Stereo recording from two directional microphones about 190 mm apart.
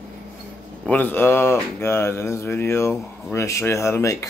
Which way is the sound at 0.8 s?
10° left (ahead or behind).